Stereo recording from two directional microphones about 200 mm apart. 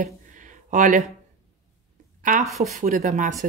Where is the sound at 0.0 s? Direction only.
40° right (ahead or behind).